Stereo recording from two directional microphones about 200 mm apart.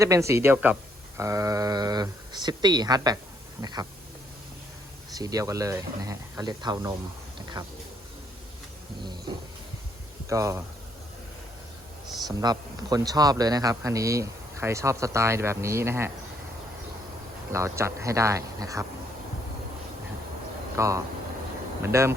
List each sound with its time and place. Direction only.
0.0 s a man's voice: 15° right (ahead or behind)
5.1 s a man's voice: 15° right (ahead or behind)
10.2 s a man's voice: 15° right (ahead or behind)
12.3 s a man's voice: 20° right (ahead or behind)
17.5 s a man's voice: 15° right (ahead or behind)
20.7 s a man's voice: 15° right (ahead or behind)